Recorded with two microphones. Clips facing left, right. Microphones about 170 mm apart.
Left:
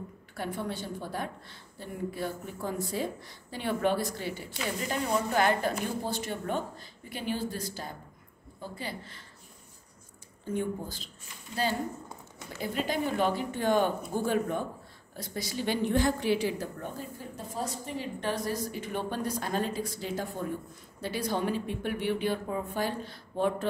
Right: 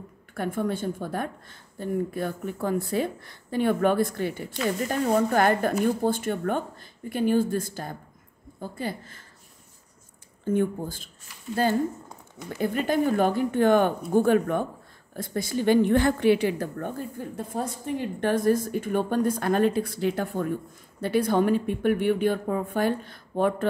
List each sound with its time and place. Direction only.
0.3 s a woman's voice: 50° right (ahead or behind)
10.4 s a woman's voice: 50° right (ahead or behind)